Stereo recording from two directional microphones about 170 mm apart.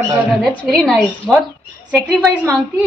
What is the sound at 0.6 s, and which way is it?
Speech, 10° left (ahead or behind).